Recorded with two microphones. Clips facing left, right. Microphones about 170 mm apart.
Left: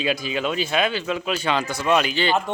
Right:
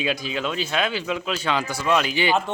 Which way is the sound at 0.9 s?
15° right (ahead or behind).